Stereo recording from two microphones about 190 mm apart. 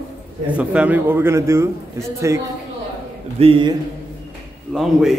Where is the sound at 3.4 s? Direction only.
30° right (ahead or behind).